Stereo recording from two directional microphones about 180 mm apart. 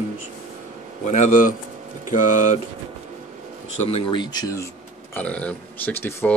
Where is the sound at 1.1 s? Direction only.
45° left (ahead or behind).